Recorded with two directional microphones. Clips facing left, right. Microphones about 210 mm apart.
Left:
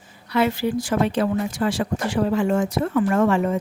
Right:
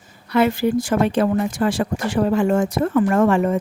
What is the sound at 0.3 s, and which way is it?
Speech, 50° right (ahead or behind).